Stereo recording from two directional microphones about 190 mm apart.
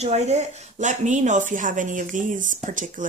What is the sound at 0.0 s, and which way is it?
Speech, 35° right (ahead or behind).